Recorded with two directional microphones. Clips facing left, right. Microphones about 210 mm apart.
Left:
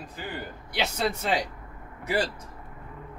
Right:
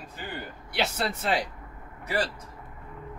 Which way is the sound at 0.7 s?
Centre (ahead or behind).